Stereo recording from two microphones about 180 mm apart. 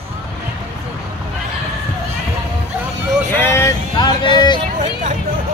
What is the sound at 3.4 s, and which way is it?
Speech, 15° left (ahead or behind).